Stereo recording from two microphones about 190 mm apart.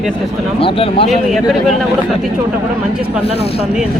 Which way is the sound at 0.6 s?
30° left (ahead or behind).